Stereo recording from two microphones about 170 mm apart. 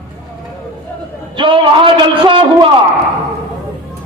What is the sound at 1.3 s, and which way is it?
A man's voice, 30° right (ahead or behind).